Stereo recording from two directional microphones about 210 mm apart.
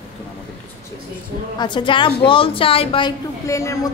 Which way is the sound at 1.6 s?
20° left (ahead or behind).